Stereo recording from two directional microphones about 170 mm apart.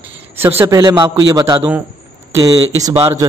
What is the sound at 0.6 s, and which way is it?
A man's voice, 20° right (ahead or behind).